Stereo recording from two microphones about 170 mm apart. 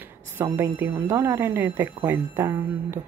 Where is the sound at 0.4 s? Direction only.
10° right (ahead or behind).